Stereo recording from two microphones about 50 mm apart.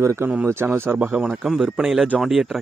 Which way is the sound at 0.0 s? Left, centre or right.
Right.